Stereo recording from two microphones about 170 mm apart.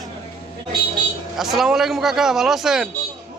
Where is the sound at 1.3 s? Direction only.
Centre (ahead or behind).